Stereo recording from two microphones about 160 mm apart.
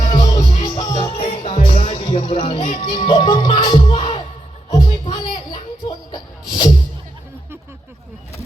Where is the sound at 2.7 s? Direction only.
35° left (ahead or behind).